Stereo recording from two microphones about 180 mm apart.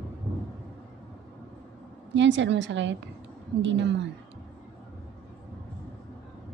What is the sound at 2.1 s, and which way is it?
A woman's voice, 85° right.